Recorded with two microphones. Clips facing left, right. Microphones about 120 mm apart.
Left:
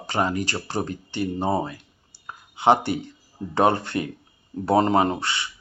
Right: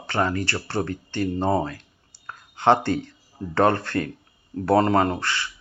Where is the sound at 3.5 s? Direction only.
15° left (ahead or behind).